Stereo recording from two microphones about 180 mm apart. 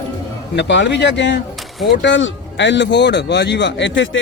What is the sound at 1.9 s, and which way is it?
Speech, 85° left.